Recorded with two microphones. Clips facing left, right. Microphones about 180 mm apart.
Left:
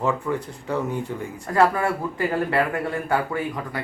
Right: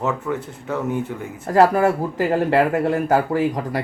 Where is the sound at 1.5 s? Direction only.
40° right (ahead or behind).